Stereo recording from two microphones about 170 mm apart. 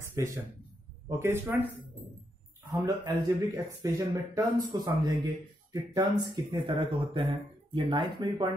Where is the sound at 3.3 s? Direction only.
15° right (ahead or behind).